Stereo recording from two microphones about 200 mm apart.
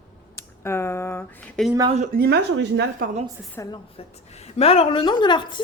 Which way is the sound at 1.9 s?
40° right (ahead or behind).